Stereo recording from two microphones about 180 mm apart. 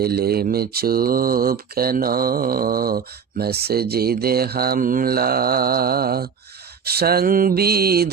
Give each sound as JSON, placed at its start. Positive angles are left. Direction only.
{"t": 0.0, "sound": "speech", "side_deg": -60}